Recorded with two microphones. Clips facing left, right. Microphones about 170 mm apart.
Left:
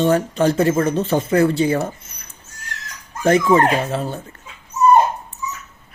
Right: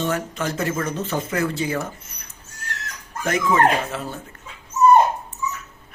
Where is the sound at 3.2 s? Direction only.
35° left (ahead or behind).